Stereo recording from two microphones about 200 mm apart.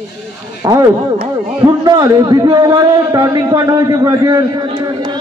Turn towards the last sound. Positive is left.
turn(degrees=-20)  # may be behind; listen again after turning